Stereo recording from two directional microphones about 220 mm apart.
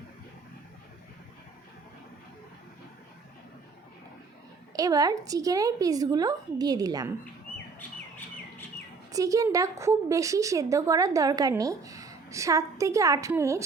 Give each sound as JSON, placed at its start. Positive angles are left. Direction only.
{"t": 4.7, "sound": "speech", "side_deg": -15}
{"t": 7.8, "sound": "bird", "side_deg": 10}
{"t": 9.1, "sound": "speech", "side_deg": -15}